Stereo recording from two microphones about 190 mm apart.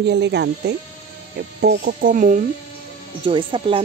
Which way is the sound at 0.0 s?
65° right (ahead or behind).